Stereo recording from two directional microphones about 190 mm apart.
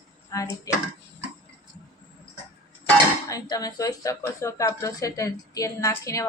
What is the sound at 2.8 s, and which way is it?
Speech, 20° left (ahead or behind).